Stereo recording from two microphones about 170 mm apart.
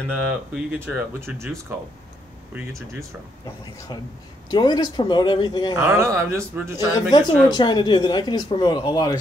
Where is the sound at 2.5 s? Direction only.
15° right (ahead or behind).